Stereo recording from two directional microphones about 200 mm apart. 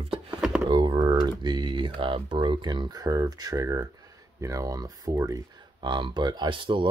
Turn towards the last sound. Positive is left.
turn(degrees=-25)  # may be behind; listen again after turning